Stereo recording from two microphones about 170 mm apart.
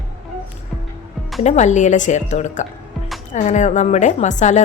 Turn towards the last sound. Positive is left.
turn(degrees=45)  # may be behind; listen again after turning